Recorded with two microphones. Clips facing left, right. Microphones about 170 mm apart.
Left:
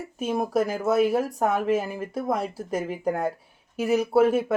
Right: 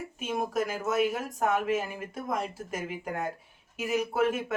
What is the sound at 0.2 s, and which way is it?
Speech, 35° left (ahead or behind).